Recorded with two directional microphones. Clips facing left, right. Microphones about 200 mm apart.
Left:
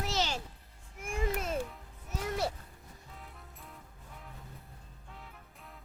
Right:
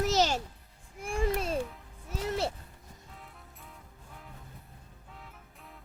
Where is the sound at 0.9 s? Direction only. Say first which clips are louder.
Right 4 dB; 35° right (ahead or behind).